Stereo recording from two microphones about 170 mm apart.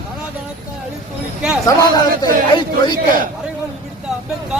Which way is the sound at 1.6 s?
20° left (ahead or behind).